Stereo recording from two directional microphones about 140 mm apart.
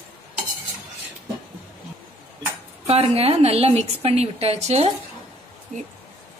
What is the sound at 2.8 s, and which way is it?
A woman's voice, 45° right (ahead or behind).